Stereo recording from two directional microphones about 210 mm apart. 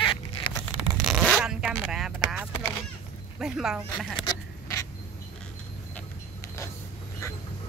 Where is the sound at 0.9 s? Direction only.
Centre (ahead or behind).